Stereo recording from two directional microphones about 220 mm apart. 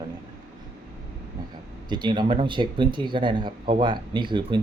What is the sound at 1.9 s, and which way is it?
Speech, 20° right (ahead or behind).